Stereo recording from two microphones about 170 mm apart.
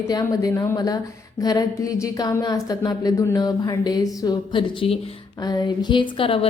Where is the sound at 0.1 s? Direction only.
20° left (ahead or behind).